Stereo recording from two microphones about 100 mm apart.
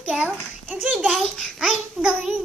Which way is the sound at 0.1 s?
5° right (ahead or behind).